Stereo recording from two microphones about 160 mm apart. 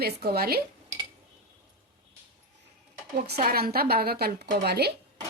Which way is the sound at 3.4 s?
70° right (ahead or behind).